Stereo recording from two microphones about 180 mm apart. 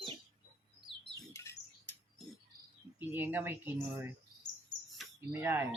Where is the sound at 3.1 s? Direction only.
10° right (ahead or behind).